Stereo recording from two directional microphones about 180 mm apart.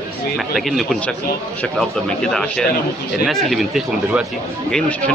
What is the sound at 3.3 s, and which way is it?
A man's voice, centre (ahead or behind).